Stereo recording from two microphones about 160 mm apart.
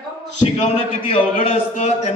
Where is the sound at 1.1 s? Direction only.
40° left (ahead or behind).